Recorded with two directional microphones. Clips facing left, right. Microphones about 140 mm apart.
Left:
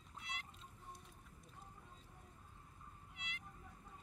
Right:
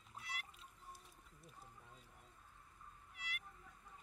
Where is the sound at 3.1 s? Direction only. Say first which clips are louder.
Right 2 dB; 20° left (ahead or behind).